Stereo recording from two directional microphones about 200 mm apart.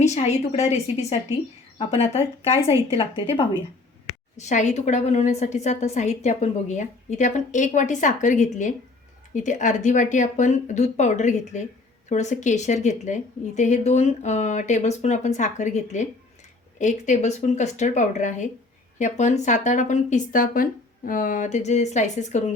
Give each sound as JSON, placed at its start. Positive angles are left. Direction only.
{"t": 0.0, "sound": "a woman's voice", "side_deg": 35}